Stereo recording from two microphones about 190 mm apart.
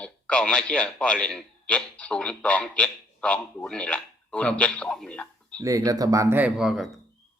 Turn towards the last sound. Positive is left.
turn(degrees=0)  # may be behind; listen again after turning